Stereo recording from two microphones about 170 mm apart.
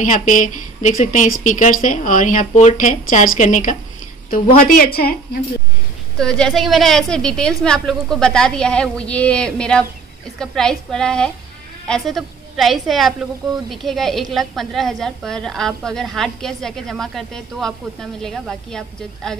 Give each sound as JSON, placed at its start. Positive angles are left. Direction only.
{"t": 0.0, "sound": "a woman's voice", "side_deg": 50}
{"t": 6.1, "sound": "a woman's voice", "side_deg": 5}